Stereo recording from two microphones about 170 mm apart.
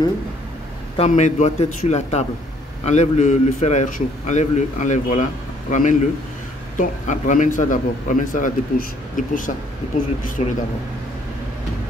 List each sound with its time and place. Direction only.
0.9 s a man's voice: 40° left (ahead or behind)
10.4 s a man's voice: 40° left (ahead or behind)